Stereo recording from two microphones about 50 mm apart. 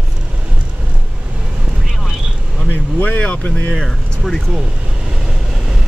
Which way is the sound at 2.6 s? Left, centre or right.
Left.